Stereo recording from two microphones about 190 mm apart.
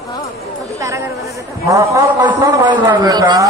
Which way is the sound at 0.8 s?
15° right (ahead or behind).